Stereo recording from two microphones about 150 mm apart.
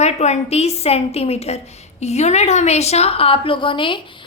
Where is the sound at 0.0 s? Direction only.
50° left (ahead or behind).